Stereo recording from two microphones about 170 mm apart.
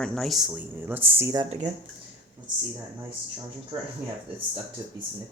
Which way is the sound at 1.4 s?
35° right (ahead or behind).